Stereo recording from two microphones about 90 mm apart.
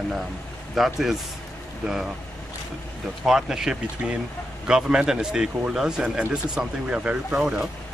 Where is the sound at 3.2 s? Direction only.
5° right (ahead or behind).